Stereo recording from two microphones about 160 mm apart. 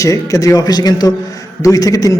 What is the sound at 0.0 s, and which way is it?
A man's voice, 20° left (ahead or behind).